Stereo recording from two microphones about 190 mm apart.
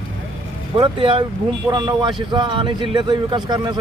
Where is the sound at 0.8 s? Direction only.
30° right (ahead or behind).